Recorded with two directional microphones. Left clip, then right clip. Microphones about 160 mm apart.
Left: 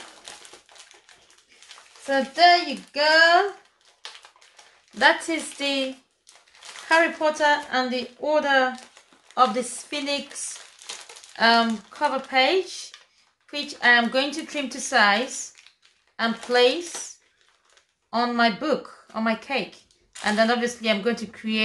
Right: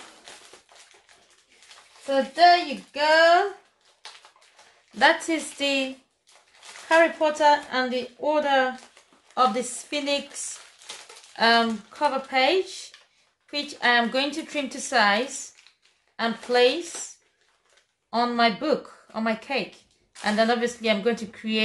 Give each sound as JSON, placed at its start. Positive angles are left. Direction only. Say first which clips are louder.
{"t": 0.3, "sound": "crumpling", "louder": "left 3 dB", "side_deg": 50}
{"t": 2.0, "sound": "a woman's voice", "louder": "even", "side_deg": -10}
{"t": 4.9, "sound": "a woman's voice", "louder": "even", "side_deg": -25}
{"t": 6.9, "sound": "a woman's voice", "louder": "even", "side_deg": -20}
{"t": 11.3, "sound": "a woman's voice", "louder": "left 1 dB", "side_deg": -10}
{"t": 18.1, "sound": "a woman's voice", "louder": "even", "side_deg": -10}